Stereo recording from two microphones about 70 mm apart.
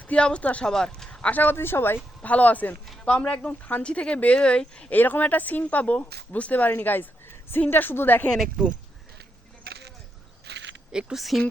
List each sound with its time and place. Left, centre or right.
0.1 s speech: centre
1.3 s speech: left
2.2 s speech: left
4.9 s speech: left
10.9 s speech: centre